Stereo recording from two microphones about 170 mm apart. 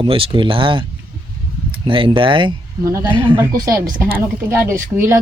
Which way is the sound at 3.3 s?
15° right (ahead or behind).